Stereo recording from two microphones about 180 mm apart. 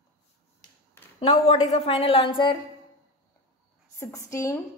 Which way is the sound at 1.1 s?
35° left (ahead or behind).